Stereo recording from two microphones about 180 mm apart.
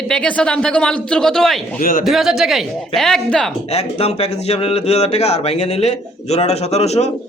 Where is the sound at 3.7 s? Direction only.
35° left (ahead or behind).